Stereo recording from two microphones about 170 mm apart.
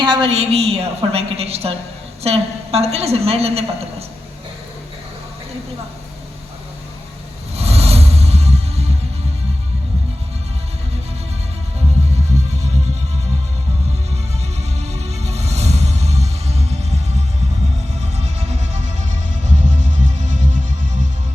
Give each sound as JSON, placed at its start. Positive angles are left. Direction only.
{"t": 0.0, "sound": "a woman's voice", "side_deg": -25}
{"t": 0.3, "sound": "a woman's voice", "side_deg": -40}
{"t": 7.5, "sound": "music", "side_deg": -35}
{"t": 14.8, "sound": "music", "side_deg": -40}
{"t": 18.0, "sound": "music", "side_deg": -40}